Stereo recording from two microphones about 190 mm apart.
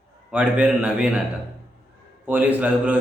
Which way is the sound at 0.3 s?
5° right (ahead or behind).